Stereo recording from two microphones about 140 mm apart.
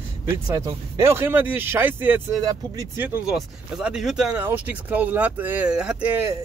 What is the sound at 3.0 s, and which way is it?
Speech, 15° right (ahead or behind).